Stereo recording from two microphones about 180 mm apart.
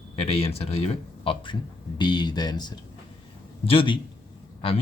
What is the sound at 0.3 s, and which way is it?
Speech, 35° left (ahead or behind).